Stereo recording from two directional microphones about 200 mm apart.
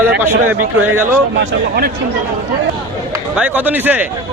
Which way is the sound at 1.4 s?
50° right (ahead or behind).